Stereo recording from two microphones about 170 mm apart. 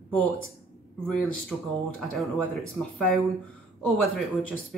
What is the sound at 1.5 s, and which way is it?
Speech, 5° right (ahead or behind).